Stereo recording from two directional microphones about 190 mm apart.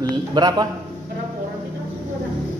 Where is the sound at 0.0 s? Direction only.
20° right (ahead or behind).